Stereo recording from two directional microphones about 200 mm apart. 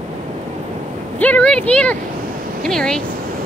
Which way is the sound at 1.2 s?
5° left (ahead or behind).